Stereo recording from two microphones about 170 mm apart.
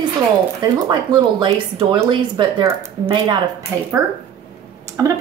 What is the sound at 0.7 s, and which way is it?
Speech, 25° right (ahead or behind).